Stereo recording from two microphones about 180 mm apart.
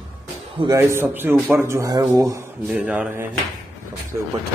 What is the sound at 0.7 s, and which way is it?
Speech, 10° right (ahead or behind).